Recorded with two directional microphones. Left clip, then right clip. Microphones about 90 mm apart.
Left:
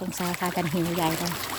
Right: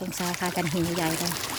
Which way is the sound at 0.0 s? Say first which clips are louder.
Even; centre (ahead or behind).